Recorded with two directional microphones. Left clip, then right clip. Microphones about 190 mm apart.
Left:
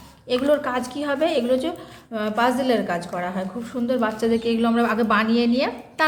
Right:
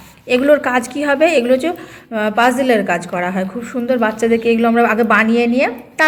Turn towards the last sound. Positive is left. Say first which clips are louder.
# right 7 dB
turn(degrees=-20)  # may be behind; listen again after turning